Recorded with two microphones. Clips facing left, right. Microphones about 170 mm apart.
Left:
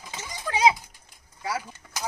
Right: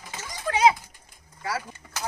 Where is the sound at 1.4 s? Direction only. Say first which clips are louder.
Even; 15° left (ahead or behind).